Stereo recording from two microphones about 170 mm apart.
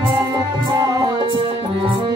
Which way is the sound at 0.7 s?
25° right (ahead or behind).